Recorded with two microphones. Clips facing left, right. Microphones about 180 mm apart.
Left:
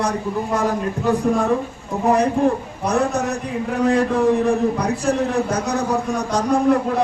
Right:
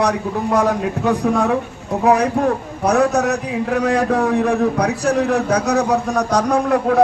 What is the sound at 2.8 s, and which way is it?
A man's voice, 70° right (ahead or behind).